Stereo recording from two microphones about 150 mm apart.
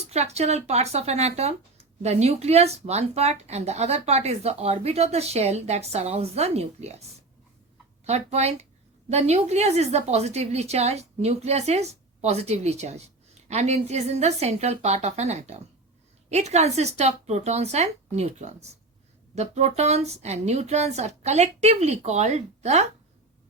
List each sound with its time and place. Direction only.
0.1 s speech: 45° right (ahead or behind)